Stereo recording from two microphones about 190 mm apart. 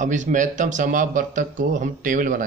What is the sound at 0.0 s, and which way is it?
Speech, 40° right (ahead or behind).